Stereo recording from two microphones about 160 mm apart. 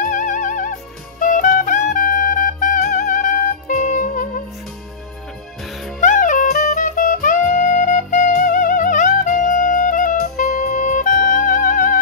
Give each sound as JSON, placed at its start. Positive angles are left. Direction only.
{"t": 0.0, "sound": "music", "side_deg": 50}
{"t": 5.6, "sound": "music", "side_deg": 0}
{"t": 5.9, "sound": "music", "side_deg": 55}